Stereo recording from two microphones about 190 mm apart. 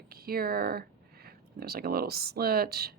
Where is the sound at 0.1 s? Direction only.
50° right (ahead or behind).